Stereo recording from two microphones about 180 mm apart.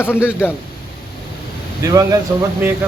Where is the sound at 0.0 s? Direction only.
10° left (ahead or behind).